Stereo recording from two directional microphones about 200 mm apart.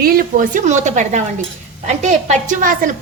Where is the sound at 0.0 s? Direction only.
45° right (ahead or behind).